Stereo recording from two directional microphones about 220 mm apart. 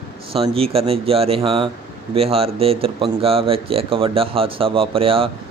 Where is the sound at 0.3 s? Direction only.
25° right (ahead or behind).